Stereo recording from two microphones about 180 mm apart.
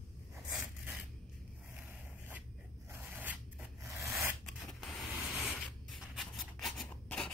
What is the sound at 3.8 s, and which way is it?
Scissors, 15° right (ahead or behind).